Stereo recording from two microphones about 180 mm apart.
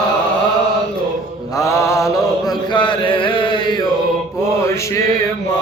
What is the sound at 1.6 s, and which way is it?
Mantra, 15° left (ahead or behind).